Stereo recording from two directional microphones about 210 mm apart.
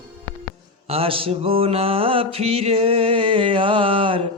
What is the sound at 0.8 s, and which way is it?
Mantra, 25° right (ahead or behind).